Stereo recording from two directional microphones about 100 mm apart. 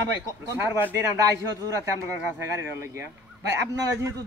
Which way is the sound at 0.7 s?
25° right (ahead or behind).